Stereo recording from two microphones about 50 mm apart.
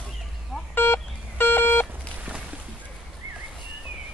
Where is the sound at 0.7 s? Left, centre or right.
Left.